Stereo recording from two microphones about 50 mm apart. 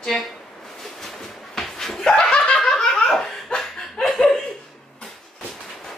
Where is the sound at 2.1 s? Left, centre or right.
Left.